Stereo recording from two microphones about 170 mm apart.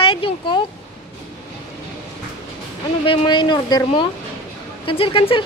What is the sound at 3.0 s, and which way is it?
Speech, 30° left (ahead or behind).